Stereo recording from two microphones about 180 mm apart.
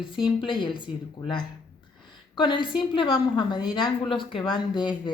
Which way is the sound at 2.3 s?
25° left (ahead or behind).